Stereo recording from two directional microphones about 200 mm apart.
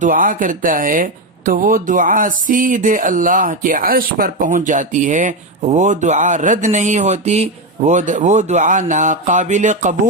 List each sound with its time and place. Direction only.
0.0 s speech: 40° right (ahead or behind)